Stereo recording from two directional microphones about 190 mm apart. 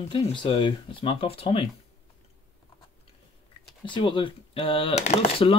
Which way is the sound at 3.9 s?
25° left (ahead or behind).